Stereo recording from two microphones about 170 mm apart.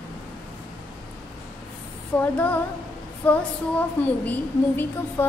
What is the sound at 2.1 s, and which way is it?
A woman's voice, 10° left (ahead or behind).